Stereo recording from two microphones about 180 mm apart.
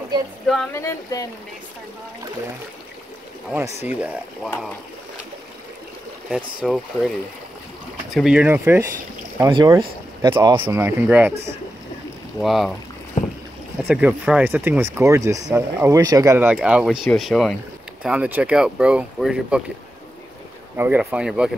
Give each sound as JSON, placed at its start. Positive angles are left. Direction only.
{"t": 0.7, "sound": "speech", "side_deg": 15}
{"t": 3.5, "sound": "speech", "side_deg": -10}
{"t": 6.3, "sound": "speech", "side_deg": 0}
{"t": 8.1, "sound": "speech", "side_deg": 0}
{"t": 10.5, "sound": "speech", "side_deg": -30}
{"t": 10.8, "sound": "speech", "side_deg": -10}
{"t": 12.4, "sound": "speech", "side_deg": 0}
{"t": 13.8, "sound": "speech", "side_deg": -5}
{"t": 16.5, "sound": "speech", "side_deg": -5}
{"t": 20.7, "sound": "speech", "side_deg": -10}